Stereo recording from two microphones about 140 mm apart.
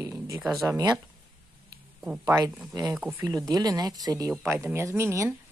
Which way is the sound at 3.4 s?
25° right (ahead or behind).